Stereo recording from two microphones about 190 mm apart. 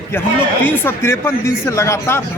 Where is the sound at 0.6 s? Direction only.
10° left (ahead or behind).